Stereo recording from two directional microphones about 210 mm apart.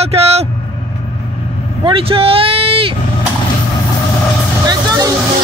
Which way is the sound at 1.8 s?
25° right (ahead or behind).